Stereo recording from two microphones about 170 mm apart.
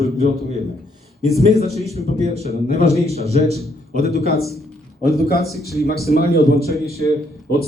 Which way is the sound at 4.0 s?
65° left (ahead or behind).